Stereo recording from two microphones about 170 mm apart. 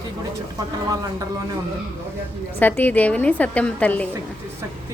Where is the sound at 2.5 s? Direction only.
10° left (ahead or behind).